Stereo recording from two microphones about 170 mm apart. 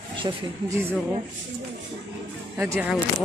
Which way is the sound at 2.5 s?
15° right (ahead or behind).